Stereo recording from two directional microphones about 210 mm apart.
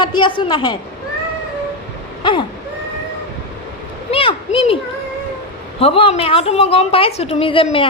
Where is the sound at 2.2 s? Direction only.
20° left (ahead or behind).